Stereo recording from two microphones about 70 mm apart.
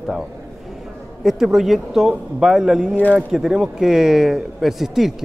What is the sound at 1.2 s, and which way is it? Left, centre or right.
Speech, centre.